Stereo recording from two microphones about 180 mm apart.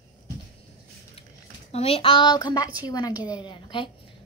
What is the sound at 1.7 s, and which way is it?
A woman's voice, 35° left (ahead or behind).